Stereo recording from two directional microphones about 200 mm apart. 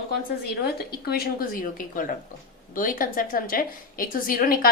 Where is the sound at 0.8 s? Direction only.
50° left (ahead or behind).